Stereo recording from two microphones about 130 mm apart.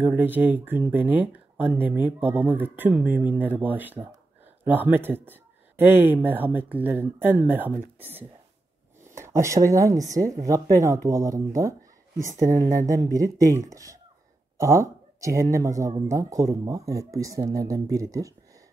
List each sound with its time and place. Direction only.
0.0 s speech: 15° right (ahead or behind)
12.7 s speech: 25° right (ahead or behind)